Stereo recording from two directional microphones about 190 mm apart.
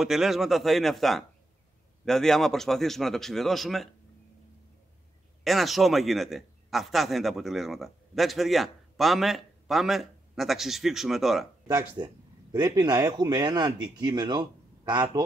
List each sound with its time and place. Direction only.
0.0 s a man's voice: centre (ahead or behind)
5.4 s a man's voice: centre (ahead or behind)
11.6 s speech: 20° right (ahead or behind)